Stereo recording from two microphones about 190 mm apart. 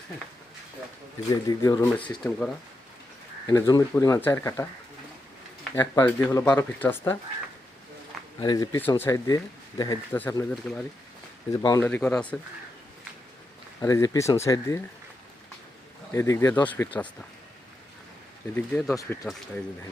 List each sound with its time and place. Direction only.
1.5 s speech: 20° left (ahead or behind)
2.0 s speech: 5° left (ahead or behind)
3.4 s speech: 20° left (ahead or behind)
5.7 s speech: 15° left (ahead or behind)
8.4 s speech: 20° left (ahead or behind)
11.5 s speech: 25° left (ahead or behind)
11.8 s speech: 10° left (ahead or behind)
13.8 s speech: 15° left (ahead or behind)
16.1 s speech: 15° left (ahead or behind)
18.5 s speech: 5° left (ahead or behind)
18.9 s speech: 15° left (ahead or behind)